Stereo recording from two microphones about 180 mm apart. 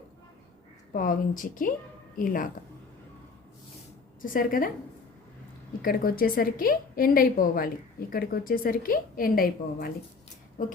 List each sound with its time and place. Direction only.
0.9 s a woman's voice: 50° left (ahead or behind)
4.2 s a woman's voice: 50° left (ahead or behind)
5.8 s a woman's voice: 55° left (ahead or behind)